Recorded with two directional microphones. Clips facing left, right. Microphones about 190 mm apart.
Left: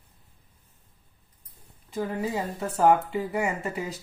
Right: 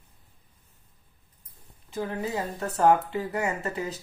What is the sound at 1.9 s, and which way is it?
Speech, 10° left (ahead or behind).